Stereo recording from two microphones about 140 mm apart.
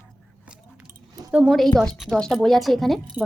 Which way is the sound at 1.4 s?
Centre (ahead or behind).